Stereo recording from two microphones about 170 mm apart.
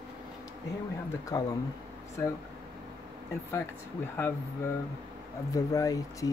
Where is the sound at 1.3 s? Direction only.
20° left (ahead or behind).